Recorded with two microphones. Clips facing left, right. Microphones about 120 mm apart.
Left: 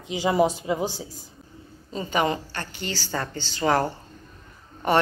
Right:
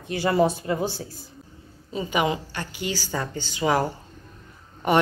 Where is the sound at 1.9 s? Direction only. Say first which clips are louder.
Even; 10° right (ahead or behind).